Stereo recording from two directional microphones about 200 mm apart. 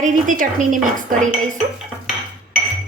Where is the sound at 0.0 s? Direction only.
40° right (ahead or behind).